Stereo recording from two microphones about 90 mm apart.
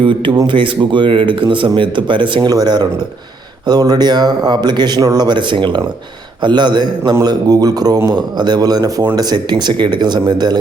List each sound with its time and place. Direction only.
0.0 s speech: 70° right (ahead or behind)
2.5 s speech: 50° right (ahead or behind)
7.1 s speech: 45° right (ahead or behind)